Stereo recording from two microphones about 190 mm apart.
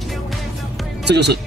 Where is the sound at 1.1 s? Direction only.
60° right (ahead or behind).